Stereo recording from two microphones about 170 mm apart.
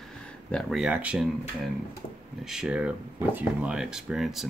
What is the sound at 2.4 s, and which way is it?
Speech, 5° right (ahead or behind).